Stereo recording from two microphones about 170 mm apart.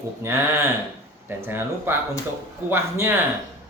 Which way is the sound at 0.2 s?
15° right (ahead or behind).